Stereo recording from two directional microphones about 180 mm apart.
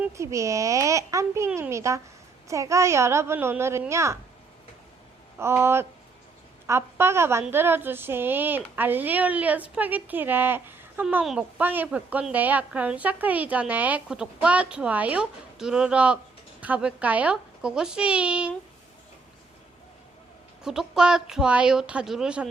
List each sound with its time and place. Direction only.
0.0 s speech: 15° right (ahead or behind)
5.4 s a child's voice: 15° right (ahead or behind)
20.7 s a child's voice: 5° right (ahead or behind)